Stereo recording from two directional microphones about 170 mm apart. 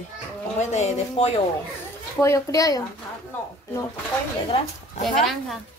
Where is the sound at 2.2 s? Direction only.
20° left (ahead or behind).